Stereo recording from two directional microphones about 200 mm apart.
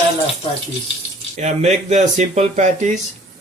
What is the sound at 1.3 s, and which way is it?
Speech, 35° right (ahead or behind).